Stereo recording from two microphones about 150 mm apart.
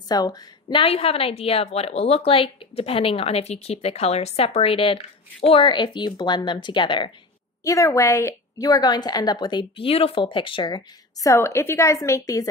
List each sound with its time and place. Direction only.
0.1 s a woman's voice: 25° left (ahead or behind)
7.6 s a woman's voice: 20° left (ahead or behind)